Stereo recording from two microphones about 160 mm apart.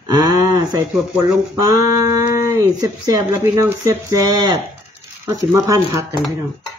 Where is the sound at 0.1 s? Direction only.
20° right (ahead or behind).